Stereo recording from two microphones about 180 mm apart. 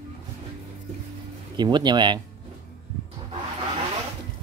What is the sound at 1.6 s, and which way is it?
Speech, 25° right (ahead or behind).